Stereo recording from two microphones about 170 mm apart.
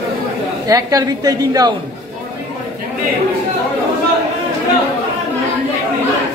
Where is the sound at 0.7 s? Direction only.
20° right (ahead or behind).